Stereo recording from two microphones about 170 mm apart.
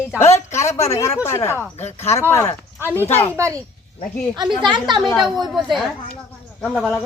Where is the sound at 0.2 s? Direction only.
15° left (ahead or behind).